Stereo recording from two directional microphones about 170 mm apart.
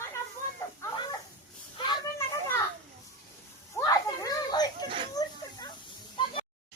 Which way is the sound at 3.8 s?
20° left (ahead or behind).